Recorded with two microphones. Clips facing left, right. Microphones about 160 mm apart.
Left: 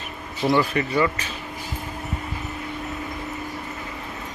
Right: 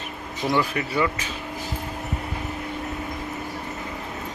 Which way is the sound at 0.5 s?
Centre (ahead or behind).